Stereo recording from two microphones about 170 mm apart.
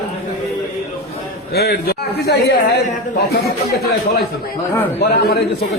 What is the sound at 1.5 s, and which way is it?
Speech, 70° left (ahead or behind).